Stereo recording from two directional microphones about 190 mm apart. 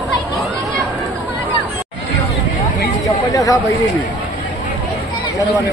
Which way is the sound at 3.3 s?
15° left (ahead or behind).